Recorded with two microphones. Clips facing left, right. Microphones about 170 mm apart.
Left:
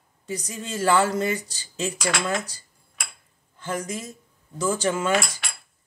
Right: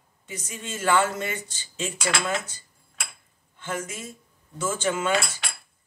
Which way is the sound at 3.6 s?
35° left (ahead or behind).